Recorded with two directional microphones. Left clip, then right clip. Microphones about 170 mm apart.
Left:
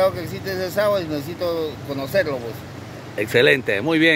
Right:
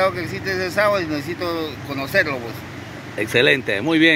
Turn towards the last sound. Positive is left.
turn(degrees=10)  # may be behind; listen again after turning